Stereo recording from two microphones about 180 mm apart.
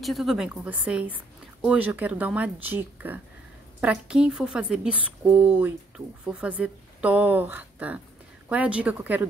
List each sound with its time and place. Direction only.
0.0 s a woman's voice: centre (ahead or behind)